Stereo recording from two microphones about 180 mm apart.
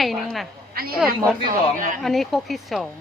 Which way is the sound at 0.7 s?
55° right (ahead or behind).